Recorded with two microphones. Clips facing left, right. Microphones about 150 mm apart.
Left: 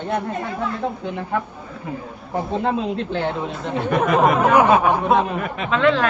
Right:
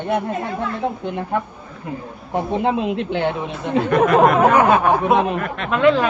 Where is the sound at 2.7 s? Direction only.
5° right (ahead or behind).